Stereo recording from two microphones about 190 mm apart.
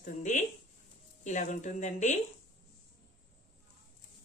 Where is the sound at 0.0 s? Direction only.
40° left (ahead or behind).